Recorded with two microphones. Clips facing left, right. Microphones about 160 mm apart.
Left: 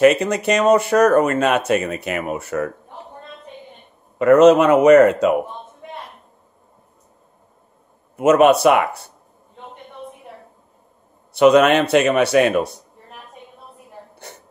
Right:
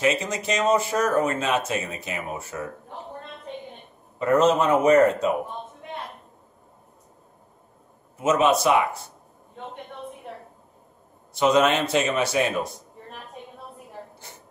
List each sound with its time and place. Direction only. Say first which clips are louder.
0.0 s speech: left 10 dB; 65° left (ahead or behind)
4.2 s speech: left 9 dB; 75° left (ahead or behind)
8.2 s speech: left 8 dB; 65° left (ahead or behind)
11.3 s speech: left 7 dB; 65° left (ahead or behind)
14.3 s a sound: left 6 dB; 70° left (ahead or behind)